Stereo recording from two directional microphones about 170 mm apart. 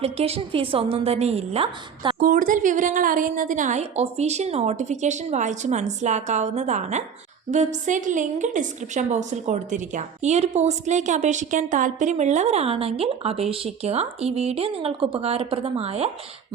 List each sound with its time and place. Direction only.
0.0 s a woman's voice: 35° right (ahead or behind)
2.1 s a woman's voice: 55° right (ahead or behind); by 16.0 s 35° right (ahead or behind)